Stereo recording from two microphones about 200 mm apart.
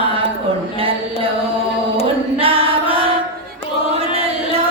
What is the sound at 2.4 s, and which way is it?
Music, 30° right (ahead or behind).